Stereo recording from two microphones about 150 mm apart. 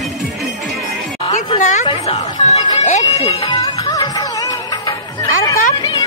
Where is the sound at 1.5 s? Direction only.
55° left (ahead or behind).